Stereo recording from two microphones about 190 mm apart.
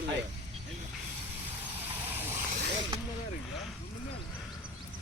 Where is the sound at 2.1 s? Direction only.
10° right (ahead or behind).